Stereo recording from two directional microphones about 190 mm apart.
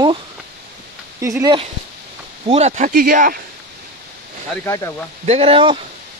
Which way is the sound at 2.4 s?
35° right (ahead or behind).